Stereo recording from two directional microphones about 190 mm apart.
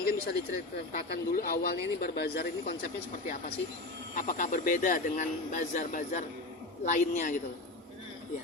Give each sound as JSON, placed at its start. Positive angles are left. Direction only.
{"t": 0.0, "sound": "a sound", "side_deg": 55}
{"t": 0.9, "sound": "speech", "side_deg": 50}
{"t": 4.1, "sound": "a man's voice", "side_deg": 45}